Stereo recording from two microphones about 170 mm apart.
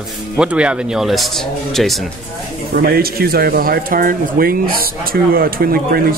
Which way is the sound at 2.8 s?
65° right (ahead or behind).